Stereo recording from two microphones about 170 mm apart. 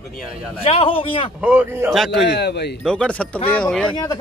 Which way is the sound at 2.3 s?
75° left (ahead or behind).